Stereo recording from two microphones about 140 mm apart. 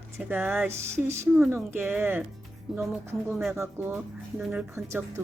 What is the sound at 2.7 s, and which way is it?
Speech, 5° right (ahead or behind).